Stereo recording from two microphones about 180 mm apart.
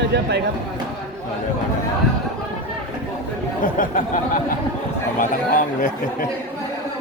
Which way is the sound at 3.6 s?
50° left (ahead or behind).